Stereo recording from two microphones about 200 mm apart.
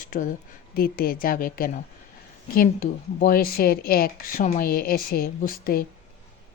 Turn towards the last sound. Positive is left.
turn(degrees=45)  # may be behind; listen again after turning